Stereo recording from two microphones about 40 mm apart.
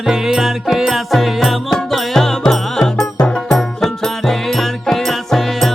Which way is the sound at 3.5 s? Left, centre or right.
Centre.